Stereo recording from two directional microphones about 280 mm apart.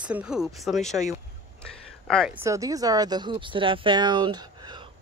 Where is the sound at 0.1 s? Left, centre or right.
Centre.